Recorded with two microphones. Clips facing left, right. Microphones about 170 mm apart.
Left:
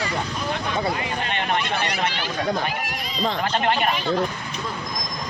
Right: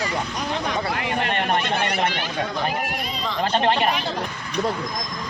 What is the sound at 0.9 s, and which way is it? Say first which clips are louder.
Speech: right 2 dB; 60° right (ahead or behind).